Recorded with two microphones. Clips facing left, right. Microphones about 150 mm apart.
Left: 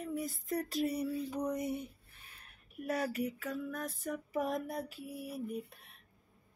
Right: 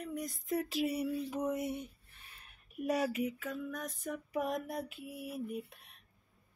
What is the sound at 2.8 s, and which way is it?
Speech, 10° right (ahead or behind).